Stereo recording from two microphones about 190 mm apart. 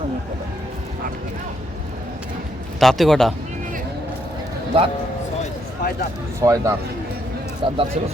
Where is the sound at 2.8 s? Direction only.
Centre (ahead or behind).